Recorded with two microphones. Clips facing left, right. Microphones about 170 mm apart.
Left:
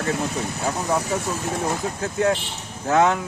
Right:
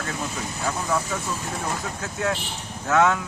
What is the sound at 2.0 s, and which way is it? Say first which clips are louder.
Speech: left 6 dB; 35° left (ahead or behind).